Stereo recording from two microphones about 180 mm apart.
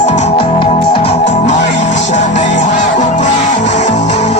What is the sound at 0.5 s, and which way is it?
Music, 30° left (ahead or behind).